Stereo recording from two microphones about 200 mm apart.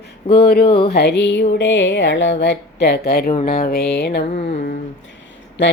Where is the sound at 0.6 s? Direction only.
30° left (ahead or behind).